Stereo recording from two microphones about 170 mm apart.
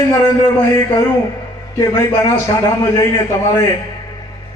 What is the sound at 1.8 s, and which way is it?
A man's voice, 20° left (ahead or behind).